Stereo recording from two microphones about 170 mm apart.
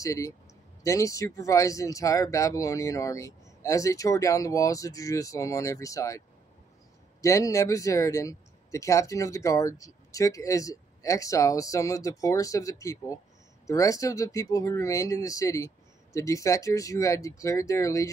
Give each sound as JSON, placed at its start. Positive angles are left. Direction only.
{"t": 0.0, "sound": "speech", "side_deg": 20}